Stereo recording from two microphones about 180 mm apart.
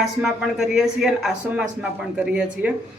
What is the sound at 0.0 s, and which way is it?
Speech, centre (ahead or behind).